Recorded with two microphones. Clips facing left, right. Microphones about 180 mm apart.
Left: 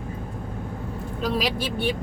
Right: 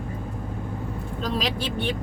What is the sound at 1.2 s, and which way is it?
Speech, 10° left (ahead or behind).